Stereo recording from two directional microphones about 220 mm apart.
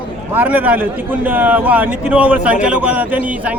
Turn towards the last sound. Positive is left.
turn(degrees=-5)  # may be behind; listen again after turning